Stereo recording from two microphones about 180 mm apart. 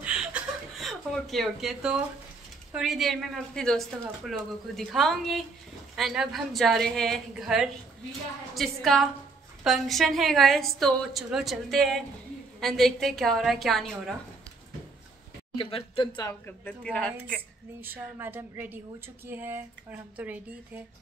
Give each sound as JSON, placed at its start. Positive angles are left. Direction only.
{"t": 0.0, "sound": "chuckle", "side_deg": -5}
{"t": 2.7, "sound": "a woman's voice", "side_deg": 0}
{"t": 15.5, "sound": "speech", "side_deg": 30}
{"t": 16.2, "sound": "a woman's voice", "side_deg": 15}
{"t": 17.7, "sound": "speech", "side_deg": -10}